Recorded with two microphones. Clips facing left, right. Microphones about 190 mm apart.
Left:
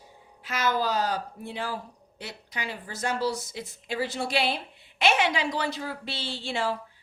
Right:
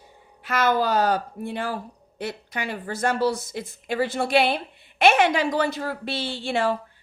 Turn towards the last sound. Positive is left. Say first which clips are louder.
# right 5 dB
turn(degrees=-55)  # may be behind; listen again after turning